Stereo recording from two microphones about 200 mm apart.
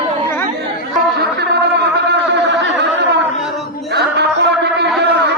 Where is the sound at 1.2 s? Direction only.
55° right (ahead or behind).